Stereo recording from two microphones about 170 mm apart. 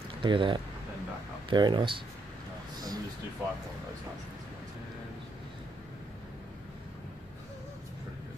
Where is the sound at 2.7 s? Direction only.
25° right (ahead or behind).